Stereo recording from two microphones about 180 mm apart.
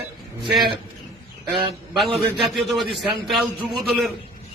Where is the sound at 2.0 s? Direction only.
Centre (ahead or behind).